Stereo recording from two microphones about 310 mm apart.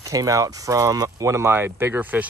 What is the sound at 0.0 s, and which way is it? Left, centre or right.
Speech, centre.